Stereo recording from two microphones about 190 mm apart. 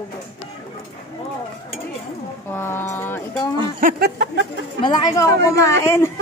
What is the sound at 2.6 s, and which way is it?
Speech, 10° left (ahead or behind).